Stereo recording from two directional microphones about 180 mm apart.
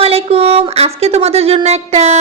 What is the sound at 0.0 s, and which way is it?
Speech, 35° right (ahead or behind).